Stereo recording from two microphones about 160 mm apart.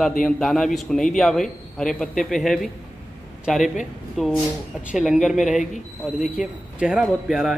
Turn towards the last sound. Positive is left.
turn(degrees=-5)  # may be behind; listen again after turning